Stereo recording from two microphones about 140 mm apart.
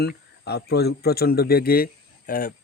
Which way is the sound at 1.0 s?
90° left.